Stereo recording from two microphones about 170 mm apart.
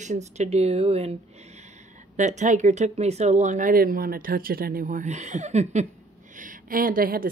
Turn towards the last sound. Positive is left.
turn(degrees=-55)  # may be behind; listen again after turning